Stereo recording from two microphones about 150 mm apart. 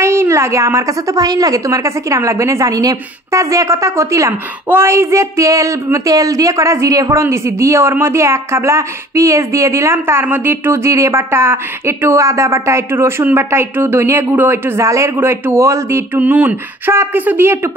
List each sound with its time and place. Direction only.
0.0 s a woman's voice: 20° right (ahead or behind)